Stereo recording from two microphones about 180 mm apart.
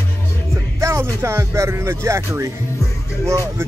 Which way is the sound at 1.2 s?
15° right (ahead or behind).